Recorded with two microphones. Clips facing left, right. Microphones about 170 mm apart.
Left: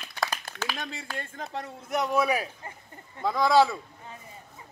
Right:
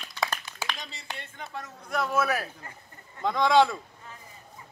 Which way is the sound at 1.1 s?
45° left (ahead or behind).